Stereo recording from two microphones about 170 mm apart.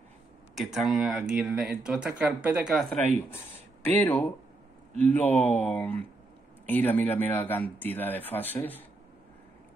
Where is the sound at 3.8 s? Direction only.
10° left (ahead or behind).